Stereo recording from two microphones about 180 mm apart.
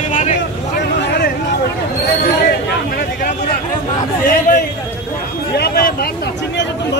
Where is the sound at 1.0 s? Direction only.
60° left (ahead or behind).